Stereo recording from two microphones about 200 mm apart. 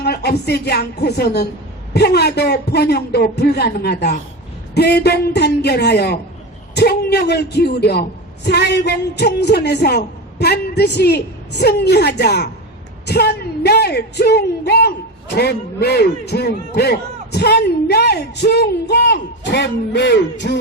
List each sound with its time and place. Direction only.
0.0 s speech: 55° left (ahead or behind)